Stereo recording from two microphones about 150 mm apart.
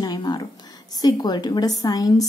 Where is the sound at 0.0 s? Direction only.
30° left (ahead or behind).